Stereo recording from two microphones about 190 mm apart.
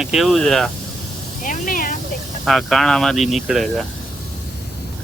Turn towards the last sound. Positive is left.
turn(degrees=0)  # may be behind; listen again after turning